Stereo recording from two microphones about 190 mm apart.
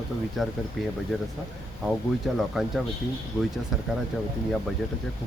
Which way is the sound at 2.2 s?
Centre (ahead or behind).